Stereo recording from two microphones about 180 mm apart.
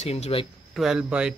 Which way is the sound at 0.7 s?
5° right (ahead or behind).